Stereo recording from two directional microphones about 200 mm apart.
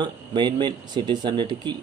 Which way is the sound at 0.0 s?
20° right (ahead or behind).